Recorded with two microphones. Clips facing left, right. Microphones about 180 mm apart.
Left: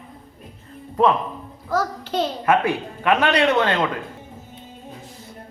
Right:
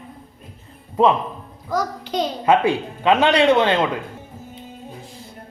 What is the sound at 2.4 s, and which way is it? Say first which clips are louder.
A man's voice: right 4 dB; 25° right (ahead or behind).